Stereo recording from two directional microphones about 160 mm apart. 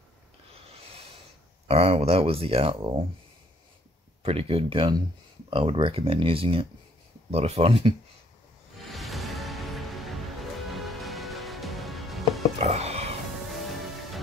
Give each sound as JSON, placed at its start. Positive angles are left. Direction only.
{"t": 1.7, "sound": "speech", "side_deg": -40}
{"t": 4.2, "sound": "speech", "side_deg": -35}
{"t": 8.7, "sound": "music", "side_deg": 0}
{"t": 12.5, "sound": "a sound", "side_deg": -40}